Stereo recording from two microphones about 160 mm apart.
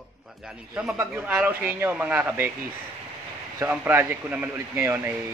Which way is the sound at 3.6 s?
10° right (ahead or behind).